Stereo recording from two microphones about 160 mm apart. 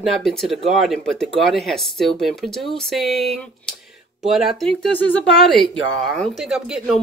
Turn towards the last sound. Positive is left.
turn(degrees=0)  # may be behind; listen again after turning